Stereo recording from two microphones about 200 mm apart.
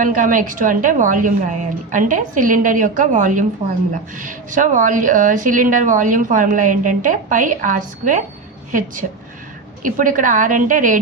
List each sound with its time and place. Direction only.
0.0 s a woman's voice: 40° right (ahead or behind)
9.8 s a woman's voice: 40° right (ahead or behind)